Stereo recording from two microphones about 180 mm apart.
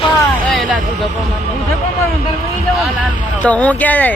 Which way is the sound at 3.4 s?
10° left (ahead or behind).